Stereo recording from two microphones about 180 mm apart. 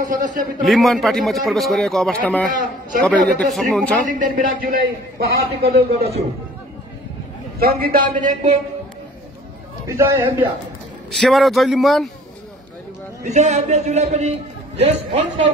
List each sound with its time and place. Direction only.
0.0 s a man's voice: 45° right (ahead or behind)
0.7 s a man's voice: centre (ahead or behind)
2.5 s a man's voice: 45° right (ahead or behind)
3.3 s a man's voice: 5° left (ahead or behind)
4.1 s a man's voice: 50° right (ahead or behind)
7.6 s a man's voice: 55° right (ahead or behind)
9.8 s a man's voice: 15° right (ahead or behind)
11.1 s a man's voice: centre (ahead or behind)
13.2 s a man's voice: 40° right (ahead or behind)